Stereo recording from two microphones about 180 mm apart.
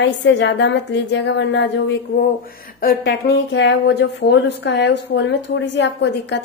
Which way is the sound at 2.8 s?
70° left (ahead or behind).